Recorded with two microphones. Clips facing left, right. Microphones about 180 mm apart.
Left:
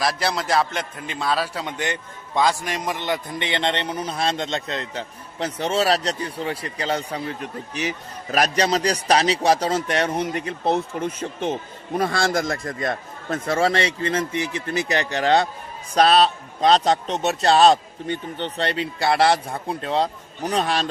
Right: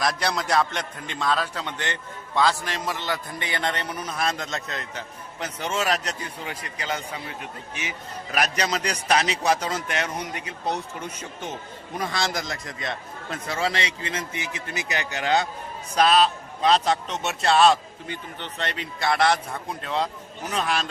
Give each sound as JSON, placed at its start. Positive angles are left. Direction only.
{"t": 0.0, "sound": "a man's voice", "side_deg": 5}
{"t": 11.9, "sound": "speech", "side_deg": 55}
{"t": 13.7, "sound": "a man's voice", "side_deg": 30}